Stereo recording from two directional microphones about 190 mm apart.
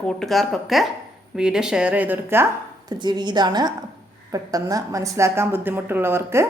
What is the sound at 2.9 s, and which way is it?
A woman's voice, 25° right (ahead or behind).